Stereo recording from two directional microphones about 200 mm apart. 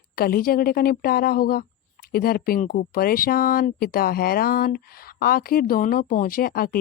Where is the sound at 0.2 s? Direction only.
50° left (ahead or behind).